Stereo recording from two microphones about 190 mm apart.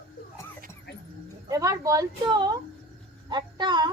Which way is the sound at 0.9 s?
60° left (ahead or behind).